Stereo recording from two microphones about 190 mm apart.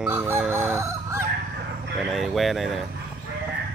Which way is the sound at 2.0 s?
Centre (ahead or behind).